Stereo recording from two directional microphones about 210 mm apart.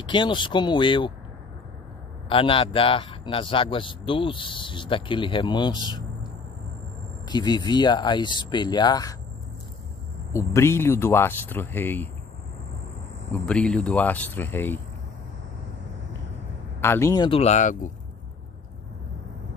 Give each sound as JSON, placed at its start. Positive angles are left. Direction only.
{"t": 0.0, "sound": "a man's voice", "side_deg": 20}
{"t": 2.2, "sound": "a man's voice", "side_deg": 25}
{"t": 7.2, "sound": "a man's voice", "side_deg": 20}
{"t": 10.3, "sound": "speech", "side_deg": 15}
{"t": 13.3, "sound": "speech", "side_deg": 5}
{"t": 16.8, "sound": "a man's voice", "side_deg": 10}